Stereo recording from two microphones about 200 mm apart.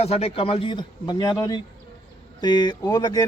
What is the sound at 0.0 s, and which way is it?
A man's voice, 30° left (ahead or behind).